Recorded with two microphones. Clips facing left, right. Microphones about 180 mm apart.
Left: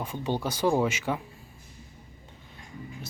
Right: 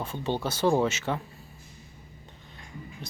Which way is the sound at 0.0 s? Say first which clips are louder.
Even; 10° left (ahead or behind).